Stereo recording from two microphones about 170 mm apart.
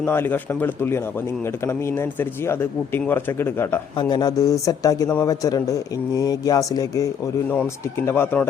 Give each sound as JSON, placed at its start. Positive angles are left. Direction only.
{"t": 0.0, "sound": "speech", "side_deg": 10}
{"t": 2.5, "sound": "speech", "side_deg": 15}
{"t": 3.9, "sound": "speech", "side_deg": 25}